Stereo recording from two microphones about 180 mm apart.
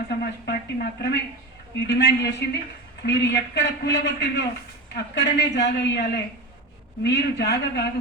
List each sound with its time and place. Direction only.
0.1 s a man's voice: 65° left (ahead or behind)